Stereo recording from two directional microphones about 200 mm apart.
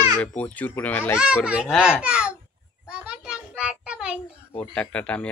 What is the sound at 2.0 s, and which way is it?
Babbling, 5° right (ahead or behind).